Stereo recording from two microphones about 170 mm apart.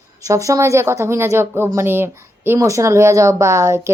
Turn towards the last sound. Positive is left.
turn(degrees=-15)  # may be behind; listen again after turning